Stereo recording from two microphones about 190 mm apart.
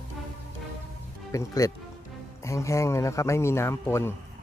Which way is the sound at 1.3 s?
15° left (ahead or behind).